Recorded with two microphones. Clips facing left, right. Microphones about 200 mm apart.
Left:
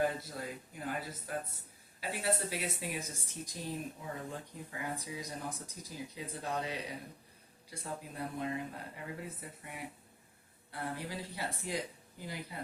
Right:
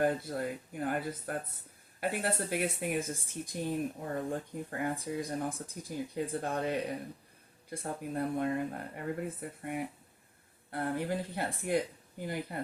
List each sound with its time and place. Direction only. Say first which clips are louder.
0.0 s speech: right 4 dB; 55° right (ahead or behind)